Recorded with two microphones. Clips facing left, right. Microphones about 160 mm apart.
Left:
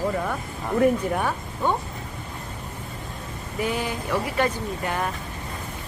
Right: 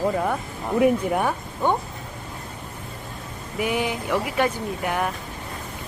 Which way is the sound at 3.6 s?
15° right (ahead or behind).